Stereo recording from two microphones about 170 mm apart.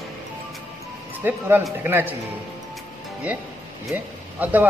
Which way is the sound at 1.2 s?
15° right (ahead or behind).